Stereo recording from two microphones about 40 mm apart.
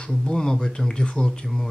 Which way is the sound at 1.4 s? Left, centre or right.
Centre.